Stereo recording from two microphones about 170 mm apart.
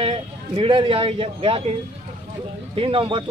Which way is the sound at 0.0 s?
30° right (ahead or behind).